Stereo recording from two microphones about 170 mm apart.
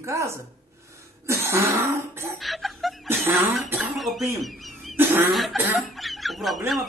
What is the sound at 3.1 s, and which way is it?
Speech, 15° right (ahead or behind).